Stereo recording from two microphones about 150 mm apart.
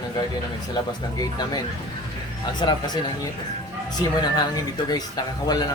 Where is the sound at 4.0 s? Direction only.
25° left (ahead or behind).